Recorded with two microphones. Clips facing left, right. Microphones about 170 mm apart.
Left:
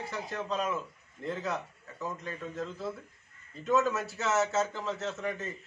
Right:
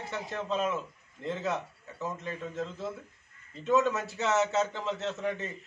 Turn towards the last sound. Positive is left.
turn(degrees=0)  # may be behind; listen again after turning